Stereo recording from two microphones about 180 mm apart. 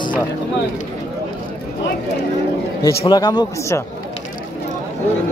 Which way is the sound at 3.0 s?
25° left (ahead or behind).